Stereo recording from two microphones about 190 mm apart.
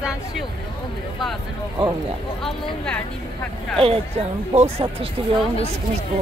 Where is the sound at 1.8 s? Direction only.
30° right (ahead or behind).